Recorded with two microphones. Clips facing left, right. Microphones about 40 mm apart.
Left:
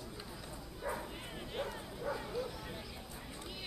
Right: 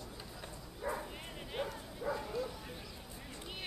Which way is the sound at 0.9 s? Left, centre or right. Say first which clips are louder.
Right 1 dB; centre.